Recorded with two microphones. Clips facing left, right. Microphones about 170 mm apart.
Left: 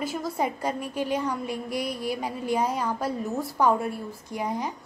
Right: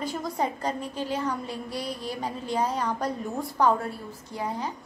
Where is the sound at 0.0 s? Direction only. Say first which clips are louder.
Left 1 dB; 5° left (ahead or behind).